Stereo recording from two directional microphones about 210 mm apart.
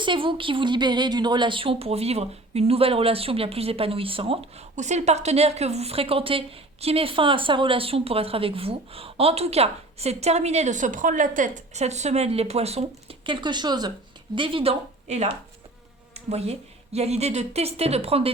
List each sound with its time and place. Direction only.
0.0 s a woman's voice: 25° right (ahead or behind)